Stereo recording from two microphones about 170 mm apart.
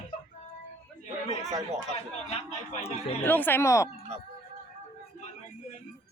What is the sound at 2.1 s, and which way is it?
Speech, 40° left (ahead or behind).